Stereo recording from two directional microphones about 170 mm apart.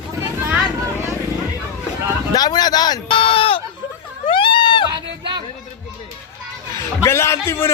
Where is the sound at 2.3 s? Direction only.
25° left (ahead or behind).